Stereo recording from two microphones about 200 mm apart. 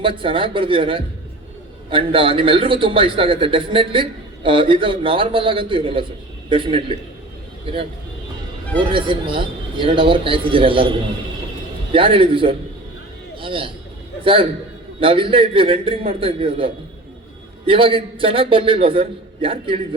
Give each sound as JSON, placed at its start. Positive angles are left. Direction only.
{"t": 0.0, "sound": "a man's voice", "side_deg": -25}
{"t": 8.8, "sound": "a man's voice", "side_deg": -25}
{"t": 11.9, "sound": "a man's voice", "side_deg": -25}
{"t": 15.0, "sound": "a man's voice", "side_deg": -25}